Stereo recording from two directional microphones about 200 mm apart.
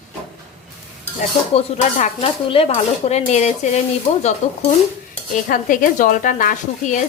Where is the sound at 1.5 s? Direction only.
30° left (ahead or behind).